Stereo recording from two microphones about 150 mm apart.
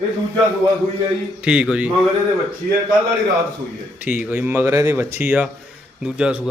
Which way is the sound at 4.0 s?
10° right (ahead or behind).